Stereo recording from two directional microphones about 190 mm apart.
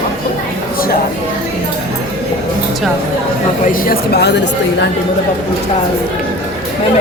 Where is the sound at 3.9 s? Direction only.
60° left (ahead or behind).